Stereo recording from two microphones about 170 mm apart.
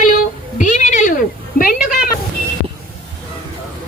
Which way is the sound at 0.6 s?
45° left (ahead or behind).